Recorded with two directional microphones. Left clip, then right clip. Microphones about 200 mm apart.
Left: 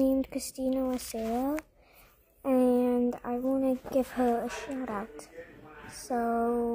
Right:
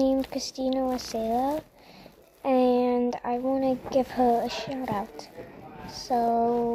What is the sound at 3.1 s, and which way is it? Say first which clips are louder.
Speech: right 4 dB; 40° left (ahead or behind).